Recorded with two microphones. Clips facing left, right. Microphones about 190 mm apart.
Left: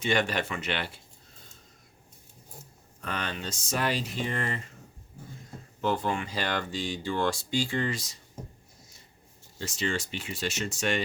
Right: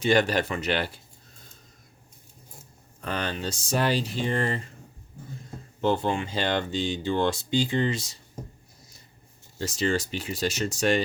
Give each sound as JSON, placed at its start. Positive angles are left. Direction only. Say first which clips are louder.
{"t": 0.0, "sound": "speech", "louder": "right 5 dB", "side_deg": -35}
{"t": 3.0, "sound": "speech", "louder": "right 4 dB", "side_deg": -35}
{"t": 5.8, "sound": "speech", "louder": "right 4 dB", "side_deg": -25}
{"t": 9.6, "sound": "speech", "louder": "right 5 dB", "side_deg": -40}